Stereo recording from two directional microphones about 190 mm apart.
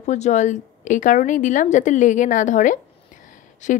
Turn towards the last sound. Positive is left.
turn(degrees=45)  # may be behind; listen again after turning